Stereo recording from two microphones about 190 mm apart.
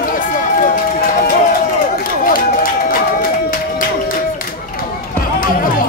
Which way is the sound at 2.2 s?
50° left (ahead or behind).